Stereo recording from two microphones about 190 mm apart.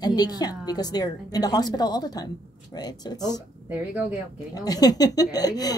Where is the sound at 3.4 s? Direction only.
10° right (ahead or behind).